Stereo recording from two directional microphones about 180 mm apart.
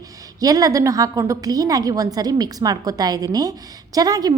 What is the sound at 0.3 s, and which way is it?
A woman's voice, 20° right (ahead or behind).